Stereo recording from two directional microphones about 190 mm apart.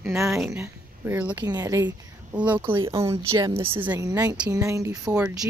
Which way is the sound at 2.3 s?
5° right (ahead or behind).